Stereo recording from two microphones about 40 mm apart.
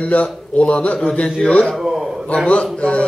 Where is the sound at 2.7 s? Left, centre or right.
Left.